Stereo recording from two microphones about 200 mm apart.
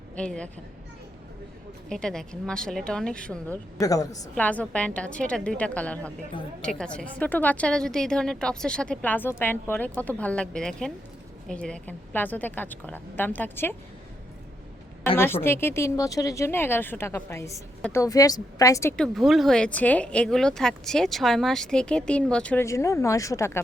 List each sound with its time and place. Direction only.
0.2 s a woman's voice: 5° left (ahead or behind)
1.9 s a woman's voice: 5° left (ahead or behind)
3.8 s speech: 15° left (ahead or behind)
4.4 s a woman's voice: 5° left (ahead or behind)
15.0 s speech: 10° left (ahead or behind)